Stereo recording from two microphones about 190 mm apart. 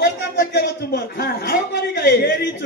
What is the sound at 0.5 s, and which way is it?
A man's voice, 55° left (ahead or behind).